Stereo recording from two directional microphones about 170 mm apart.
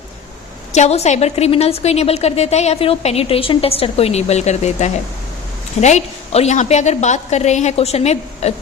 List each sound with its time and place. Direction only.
0.7 s a woman's voice: 40° left (ahead or behind)